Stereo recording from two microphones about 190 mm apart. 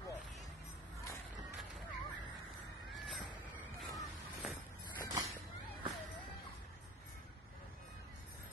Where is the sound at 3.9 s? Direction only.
Centre (ahead or behind).